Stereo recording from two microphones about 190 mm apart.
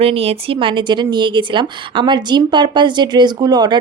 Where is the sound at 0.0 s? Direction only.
30° right (ahead or behind).